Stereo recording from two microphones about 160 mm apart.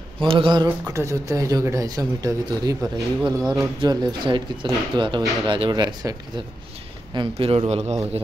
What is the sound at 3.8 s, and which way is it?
A man's voice, 30° right (ahead or behind).